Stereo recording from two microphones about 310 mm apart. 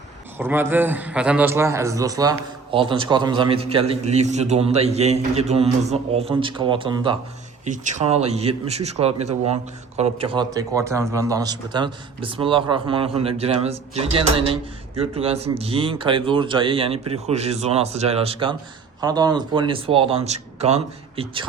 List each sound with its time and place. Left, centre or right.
0.3 s a man's voice: centre